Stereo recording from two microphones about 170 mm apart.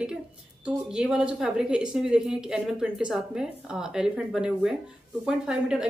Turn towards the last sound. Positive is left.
turn(degrees=-5)  # may be behind; listen again after turning